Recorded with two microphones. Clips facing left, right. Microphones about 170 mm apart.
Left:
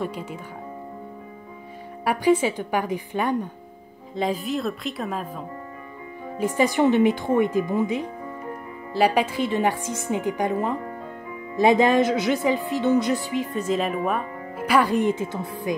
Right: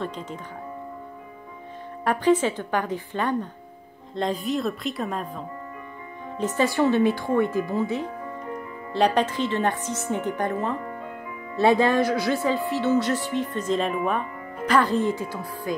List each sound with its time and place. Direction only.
0.0 s speech: 10° left (ahead or behind)
2.0 s a woman's voice: 10° left (ahead or behind)